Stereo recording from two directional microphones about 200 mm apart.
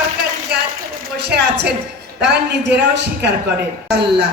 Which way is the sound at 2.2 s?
60° right (ahead or behind).